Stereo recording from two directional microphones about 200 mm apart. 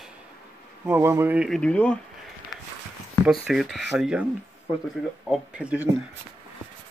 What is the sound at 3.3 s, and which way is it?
Speech, centre (ahead or behind).